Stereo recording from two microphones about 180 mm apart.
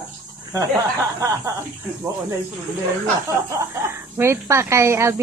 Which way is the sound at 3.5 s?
15° right (ahead or behind).